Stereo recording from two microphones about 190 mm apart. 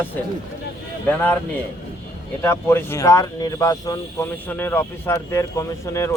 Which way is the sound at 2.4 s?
15° left (ahead or behind).